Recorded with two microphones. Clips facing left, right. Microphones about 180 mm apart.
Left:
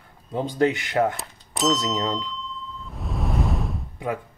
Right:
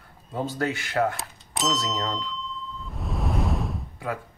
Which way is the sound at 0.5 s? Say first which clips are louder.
Left 7 dB; 20° left (ahead or behind).